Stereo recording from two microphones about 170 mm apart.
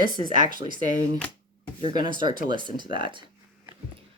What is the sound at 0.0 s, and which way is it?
Speech, 25° right (ahead or behind).